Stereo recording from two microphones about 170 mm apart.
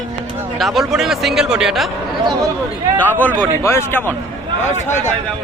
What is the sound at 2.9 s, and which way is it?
A man's voice, 10° left (ahead or behind).